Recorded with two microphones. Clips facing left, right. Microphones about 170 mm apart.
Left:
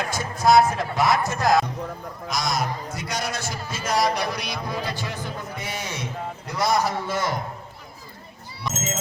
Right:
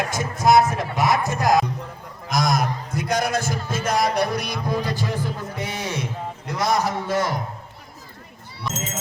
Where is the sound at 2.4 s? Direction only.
55° right (ahead or behind).